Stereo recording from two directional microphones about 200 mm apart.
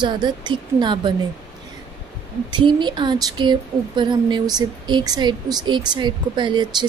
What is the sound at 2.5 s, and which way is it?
A woman's voice, 25° right (ahead or behind).